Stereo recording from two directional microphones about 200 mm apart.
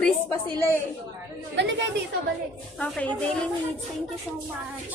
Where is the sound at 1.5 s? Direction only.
60° right (ahead or behind).